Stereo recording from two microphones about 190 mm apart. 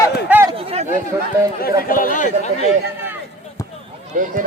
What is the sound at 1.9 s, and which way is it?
Speech, 45° left (ahead or behind).